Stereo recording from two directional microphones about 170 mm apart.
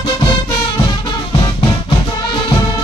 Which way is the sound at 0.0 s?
25° left (ahead or behind).